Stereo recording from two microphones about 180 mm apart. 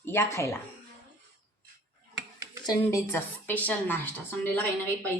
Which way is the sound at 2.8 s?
15° left (ahead or behind).